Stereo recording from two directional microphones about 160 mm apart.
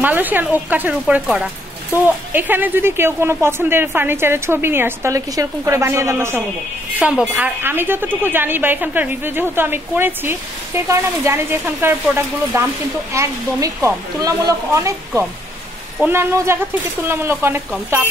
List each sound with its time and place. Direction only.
0.0 s a woman's voice: 10° right (ahead or behind)